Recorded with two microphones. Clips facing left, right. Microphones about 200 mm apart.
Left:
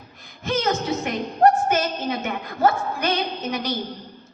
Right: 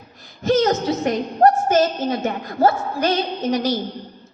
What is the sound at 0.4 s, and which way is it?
A woman's voice, 40° right (ahead or behind).